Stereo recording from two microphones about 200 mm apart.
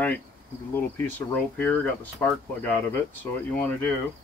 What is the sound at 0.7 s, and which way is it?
Speech, 10° left (ahead or behind).